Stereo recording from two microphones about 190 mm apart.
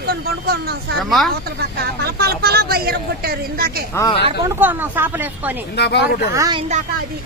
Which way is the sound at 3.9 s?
15° left (ahead or behind).